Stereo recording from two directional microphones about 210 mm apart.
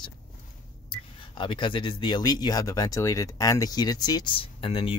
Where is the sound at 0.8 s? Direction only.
25° left (ahead or behind).